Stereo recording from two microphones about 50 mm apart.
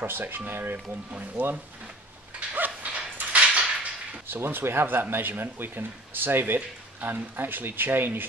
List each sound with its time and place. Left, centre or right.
0.0 s speech: right
0.8 s speech: right
2.5 s dog: right
4.3 s speech: right